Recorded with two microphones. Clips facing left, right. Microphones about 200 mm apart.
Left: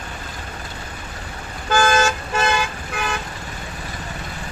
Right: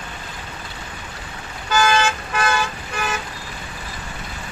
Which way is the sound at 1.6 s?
50° left (ahead or behind).